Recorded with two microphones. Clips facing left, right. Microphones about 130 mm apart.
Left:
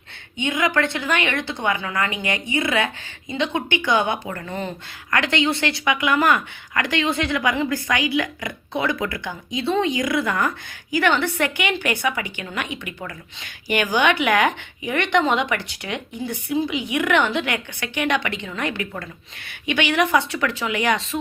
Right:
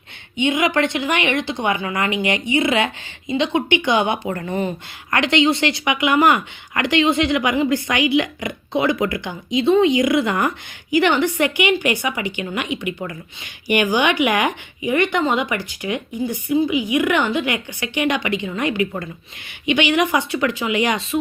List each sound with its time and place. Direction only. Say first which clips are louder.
0.3 s speech: right 3 dB; 20° right (ahead or behind)
4.3 s speech: right 6 dB; 35° right (ahead or behind)
5.1 s a woman's voice: right 4 dB; 20° right (ahead or behind)
13.7 s a woman's voice: right 2 dB; 15° right (ahead or behind)